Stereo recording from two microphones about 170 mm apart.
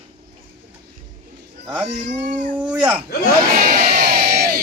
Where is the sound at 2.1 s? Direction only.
50° right (ahead or behind).